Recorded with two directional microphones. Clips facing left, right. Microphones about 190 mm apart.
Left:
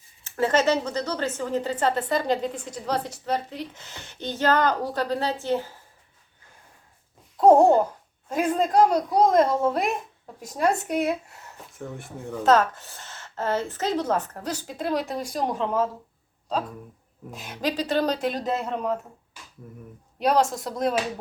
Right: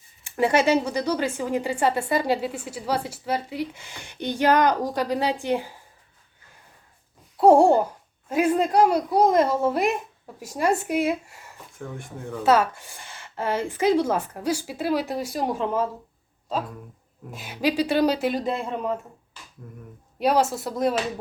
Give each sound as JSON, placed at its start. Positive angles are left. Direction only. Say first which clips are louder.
{"t": 0.3, "sound": "speech", "louder": "right 2 dB", "side_deg": -15}
{"t": 7.3, "sound": "babbling", "louder": "even", "side_deg": -10}
{"t": 8.3, "sound": "speech", "louder": "right 2 dB", "side_deg": -5}
{"t": 11.8, "sound": "speech", "louder": "even", "side_deg": 0}
{"t": 12.4, "sound": "speech", "louder": "even", "side_deg": -10}
{"t": 17.3, "sound": "speech", "louder": "right 4 dB", "side_deg": -5}
{"t": 19.6, "sound": "speech", "louder": "even", "side_deg": 10}
{"t": 20.1, "sound": "speech", "louder": "even", "side_deg": -5}